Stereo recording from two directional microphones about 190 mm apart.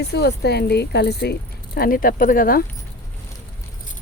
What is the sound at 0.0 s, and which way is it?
Speech, 60° left (ahead or behind).